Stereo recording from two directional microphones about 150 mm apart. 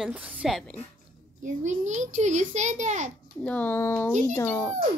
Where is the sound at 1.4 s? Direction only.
55° right (ahead or behind).